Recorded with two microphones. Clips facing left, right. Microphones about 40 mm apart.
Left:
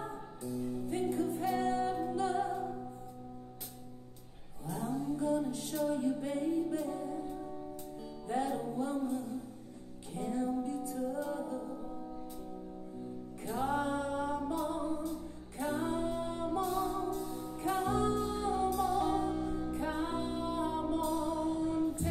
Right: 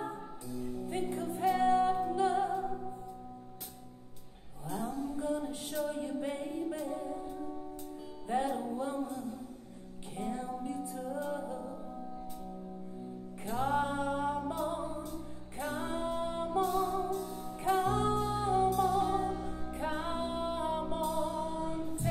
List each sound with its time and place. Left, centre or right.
0.5 s music: right
1.1 s music: centre
5.1 s music: centre
8.3 s music: centre
10.1 s music: centre
13.7 s music: centre
14.5 s music: centre
16.6 s music: centre
17.7 s music: right
18.2 s music: centre
18.9 s music: centre
19.7 s music: right
21.2 s music: centre